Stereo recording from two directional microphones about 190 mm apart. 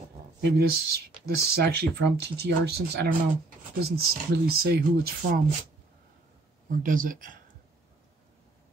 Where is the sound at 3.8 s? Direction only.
55° right (ahead or behind).